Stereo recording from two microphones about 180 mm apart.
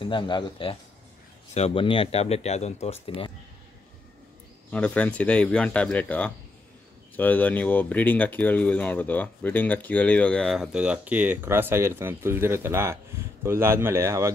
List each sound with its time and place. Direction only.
0.0 s speech: 25° left (ahead or behind)
4.6 s speech: 10° left (ahead or behind); by 14.3 s 15° right (ahead or behind)